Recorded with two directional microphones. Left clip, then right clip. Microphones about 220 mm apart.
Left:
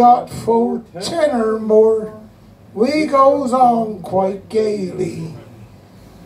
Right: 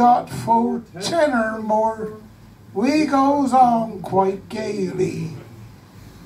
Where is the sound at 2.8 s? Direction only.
15° right (ahead or behind).